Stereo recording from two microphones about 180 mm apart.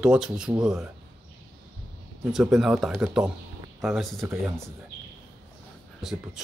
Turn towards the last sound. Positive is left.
turn(degrees=0)  # may be behind; listen again after turning